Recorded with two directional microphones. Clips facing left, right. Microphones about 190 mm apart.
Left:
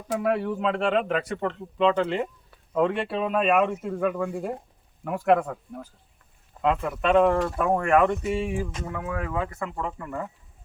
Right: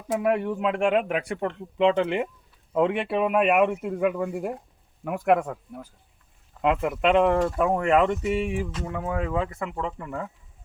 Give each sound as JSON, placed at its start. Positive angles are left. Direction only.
{"t": 0.2, "sound": "speech", "side_deg": -15}